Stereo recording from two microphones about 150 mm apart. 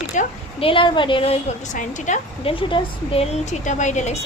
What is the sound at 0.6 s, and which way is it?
A woman's voice, 35° left (ahead or behind).